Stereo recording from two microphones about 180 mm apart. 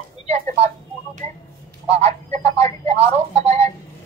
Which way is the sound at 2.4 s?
20° left (ahead or behind).